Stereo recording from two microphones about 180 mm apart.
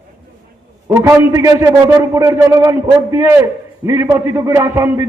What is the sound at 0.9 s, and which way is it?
A man's voice, 15° right (ahead or behind).